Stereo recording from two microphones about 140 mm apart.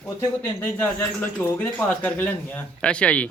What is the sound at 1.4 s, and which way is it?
Speech, 10° left (ahead or behind).